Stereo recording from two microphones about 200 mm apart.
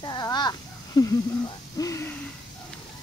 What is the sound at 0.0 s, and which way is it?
Speech, 20° left (ahead or behind).